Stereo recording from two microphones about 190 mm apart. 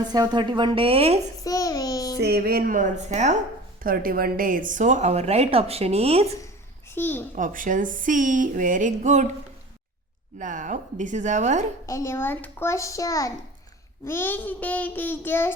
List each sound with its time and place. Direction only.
0.0 s a woman's voice: 20° right (ahead or behind)
1.5 s a child's voice: 20° left (ahead or behind)
2.1 s speech: 60° right (ahead or behind); by 3.3 s 40° right (ahead or behind)
3.8 s a woman's voice: 50° right (ahead or behind); by 6.3 s 35° right (ahead or behind)
6.9 s child singing: 10° left (ahead or behind)
7.3 s speech: 45° right (ahead or behind)
10.3 s a woman's voice: 40° right (ahead or behind)
11.9 s child singing: 15° left (ahead or behind)